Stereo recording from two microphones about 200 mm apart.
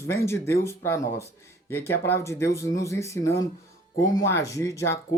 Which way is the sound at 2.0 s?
15° left (ahead or behind).